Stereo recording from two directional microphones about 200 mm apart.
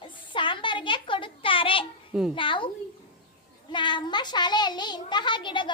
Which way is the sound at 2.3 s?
25° left (ahead or behind).